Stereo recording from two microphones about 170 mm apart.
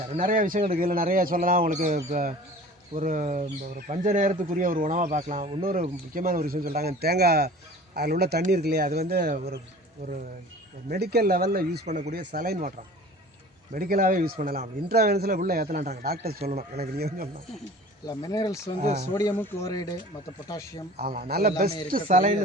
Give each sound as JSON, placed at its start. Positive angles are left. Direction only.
{"t": 0.3, "sound": "speech", "side_deg": -55}
{"t": 6.1, "sound": "speech", "side_deg": -55}
{"t": 10.8, "sound": "speech", "side_deg": -70}
{"t": 11.9, "sound": "speech", "side_deg": -45}
{"t": 12.1, "sound": "speech", "side_deg": -60}
{"t": 13.7, "sound": "speech", "side_deg": -60}
{"t": 16.4, "sound": "speech", "side_deg": -40}
{"t": 16.7, "sound": "speech", "side_deg": -65}
{"t": 18.0, "sound": "speech", "side_deg": 20}
{"t": 18.8, "sound": "speech", "side_deg": -40}
{"t": 19.1, "sound": "speech", "side_deg": 15}
{"t": 20.9, "sound": "speech", "side_deg": -65}